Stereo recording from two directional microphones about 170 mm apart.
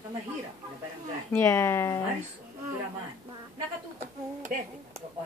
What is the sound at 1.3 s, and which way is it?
Speech, 15° left (ahead or behind).